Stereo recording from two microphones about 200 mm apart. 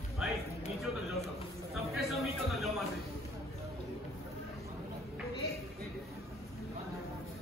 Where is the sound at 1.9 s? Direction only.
Centre (ahead or behind).